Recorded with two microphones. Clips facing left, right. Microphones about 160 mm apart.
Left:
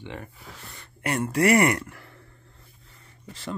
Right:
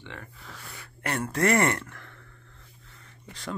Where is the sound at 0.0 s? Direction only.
15° left (ahead or behind).